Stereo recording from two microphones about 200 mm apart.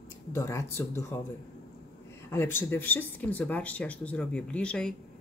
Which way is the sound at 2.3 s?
10° left (ahead or behind).